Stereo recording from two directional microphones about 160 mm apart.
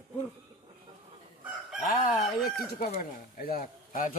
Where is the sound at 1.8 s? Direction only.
50° left (ahead or behind).